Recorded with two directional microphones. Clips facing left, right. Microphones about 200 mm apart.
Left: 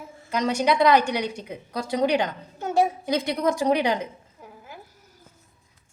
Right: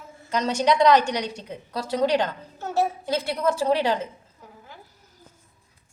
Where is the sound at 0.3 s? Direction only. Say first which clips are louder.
Even; 10° left (ahead or behind).